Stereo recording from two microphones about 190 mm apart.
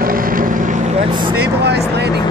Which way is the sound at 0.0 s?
50° right (ahead or behind).